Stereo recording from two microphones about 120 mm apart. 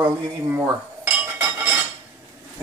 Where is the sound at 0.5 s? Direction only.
15° right (ahead or behind).